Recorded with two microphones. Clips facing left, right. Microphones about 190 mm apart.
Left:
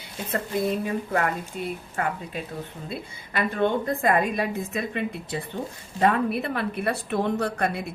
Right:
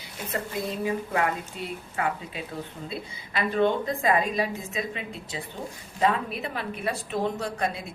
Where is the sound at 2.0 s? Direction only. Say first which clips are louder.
Even; 45° left (ahead or behind).